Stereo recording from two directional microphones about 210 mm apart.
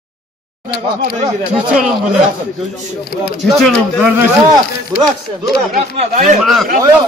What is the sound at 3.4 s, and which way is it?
Speech, centre (ahead or behind).